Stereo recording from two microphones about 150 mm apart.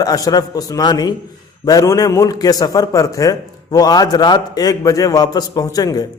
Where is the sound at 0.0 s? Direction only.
25° left (ahead or behind).